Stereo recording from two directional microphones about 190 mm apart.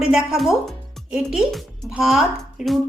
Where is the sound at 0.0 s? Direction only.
5° right (ahead or behind).